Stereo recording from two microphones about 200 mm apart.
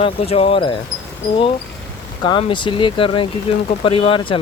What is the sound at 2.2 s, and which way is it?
Speech, 20° left (ahead or behind).